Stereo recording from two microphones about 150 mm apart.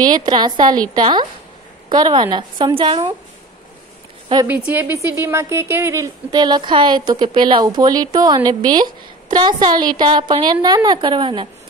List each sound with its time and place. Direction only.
0.0 s a woman's voice: 30° right (ahead or behind)
4.6 s a woman's voice: 15° right (ahead or behind)
6.3 s a woman's voice: 30° right (ahead or behind)